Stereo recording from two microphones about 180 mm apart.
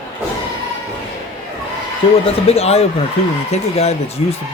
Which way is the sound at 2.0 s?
30° left (ahead or behind).